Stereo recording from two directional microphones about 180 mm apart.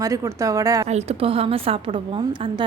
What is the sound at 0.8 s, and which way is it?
A woman's voice, 35° right (ahead or behind).